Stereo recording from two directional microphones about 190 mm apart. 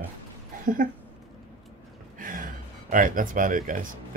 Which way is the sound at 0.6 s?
45° right (ahead or behind).